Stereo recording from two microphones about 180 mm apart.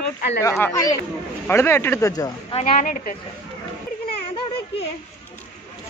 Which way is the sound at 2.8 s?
50° left (ahead or behind).